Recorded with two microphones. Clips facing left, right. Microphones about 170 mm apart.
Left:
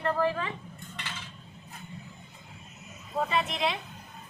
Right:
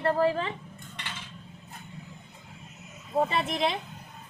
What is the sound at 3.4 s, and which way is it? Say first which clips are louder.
Speech: right 2 dB; 40° right (ahead or behind).